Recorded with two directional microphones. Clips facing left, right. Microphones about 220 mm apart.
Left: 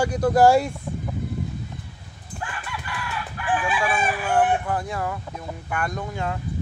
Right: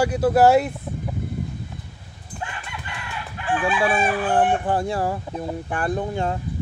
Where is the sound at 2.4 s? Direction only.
25° right (ahead or behind).